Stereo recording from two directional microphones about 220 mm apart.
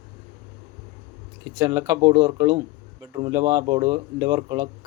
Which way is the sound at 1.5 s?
15° right (ahead or behind).